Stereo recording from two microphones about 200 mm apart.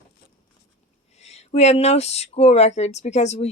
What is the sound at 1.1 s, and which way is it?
Speech, 35° left (ahead or behind).